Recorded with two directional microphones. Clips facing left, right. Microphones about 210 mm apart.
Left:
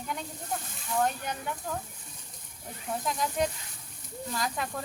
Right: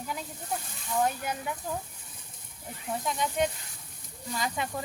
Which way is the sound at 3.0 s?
Centre (ahead or behind).